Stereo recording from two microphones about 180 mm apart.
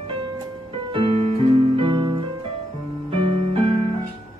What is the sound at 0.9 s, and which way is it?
Music, 30° right (ahead or behind).